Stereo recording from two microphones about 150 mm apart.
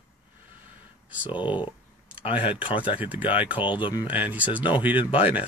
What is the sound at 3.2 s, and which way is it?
Speech, 35° left (ahead or behind).